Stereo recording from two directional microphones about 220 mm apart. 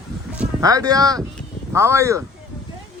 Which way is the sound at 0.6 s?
15° right (ahead or behind).